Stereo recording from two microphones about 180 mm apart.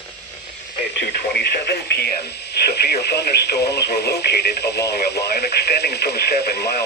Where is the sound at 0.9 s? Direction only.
65° left (ahead or behind).